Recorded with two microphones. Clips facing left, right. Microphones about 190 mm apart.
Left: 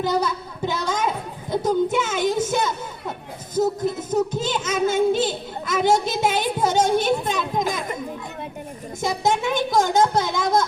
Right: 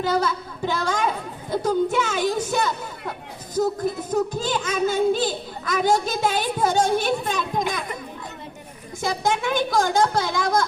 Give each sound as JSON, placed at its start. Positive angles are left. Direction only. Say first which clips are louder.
{"t": 0.0, "sound": "a child's voice", "louder": "even", "side_deg": 20}
{"t": 9.0, "sound": "a child's voice", "louder": "left 2 dB", "side_deg": 20}